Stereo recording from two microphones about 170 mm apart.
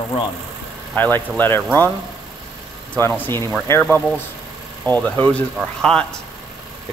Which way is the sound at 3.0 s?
10° left (ahead or behind).